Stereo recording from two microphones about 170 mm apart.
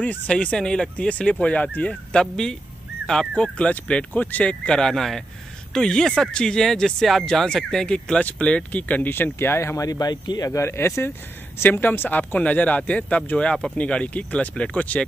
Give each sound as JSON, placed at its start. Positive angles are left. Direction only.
{"t": 0.0, "sound": "speech", "side_deg": 10}